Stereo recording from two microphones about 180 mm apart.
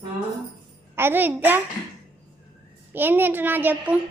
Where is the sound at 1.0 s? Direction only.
10° right (ahead or behind).